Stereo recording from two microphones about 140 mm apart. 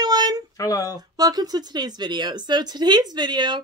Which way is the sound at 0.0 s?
30° right (ahead or behind).